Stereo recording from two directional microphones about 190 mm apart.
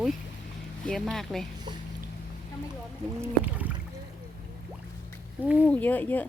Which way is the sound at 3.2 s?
10° right (ahead or behind).